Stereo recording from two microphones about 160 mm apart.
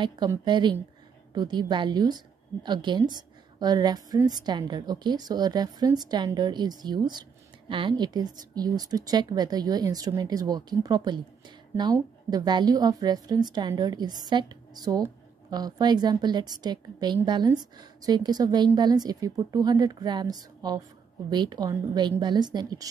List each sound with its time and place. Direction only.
0.0 s a woman's voice: 25° right (ahead or behind)